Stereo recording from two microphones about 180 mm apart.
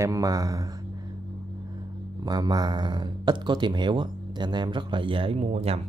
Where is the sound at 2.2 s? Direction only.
20° right (ahead or behind).